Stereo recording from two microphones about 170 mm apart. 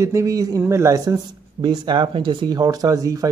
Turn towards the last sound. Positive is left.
turn(degrees=-20)  # may be behind; listen again after turning